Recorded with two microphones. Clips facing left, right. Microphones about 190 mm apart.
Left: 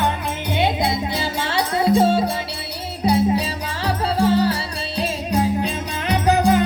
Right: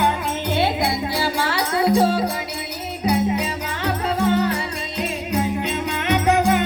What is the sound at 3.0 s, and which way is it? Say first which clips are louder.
Music: left 2 dB; 30° left (ahead or behind).